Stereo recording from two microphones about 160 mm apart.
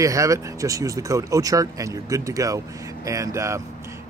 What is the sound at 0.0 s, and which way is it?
Speech, 20° right (ahead or behind).